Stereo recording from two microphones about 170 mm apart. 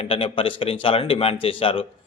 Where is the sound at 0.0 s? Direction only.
30° left (ahead or behind).